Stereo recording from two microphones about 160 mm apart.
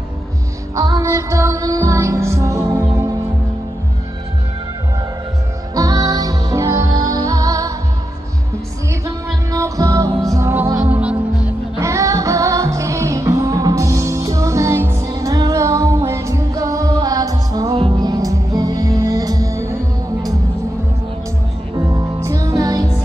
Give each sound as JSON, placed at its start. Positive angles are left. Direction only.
{"t": 0.7, "sound": "music", "side_deg": -20}
{"t": 5.8, "sound": "music", "side_deg": -20}
{"t": 9.0, "sound": "music", "side_deg": -20}
{"t": 11.8, "sound": "music", "side_deg": -20}
{"t": 21.7, "sound": "music", "side_deg": -20}